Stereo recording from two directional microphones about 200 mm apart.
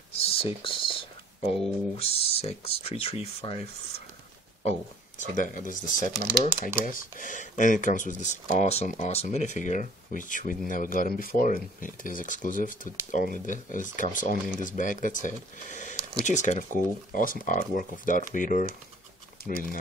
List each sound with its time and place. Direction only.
0.1 s a sound: 30° left (ahead or behind)
2.0 s speech: 30° left (ahead or behind)
5.3 s speech: 40° left (ahead or behind)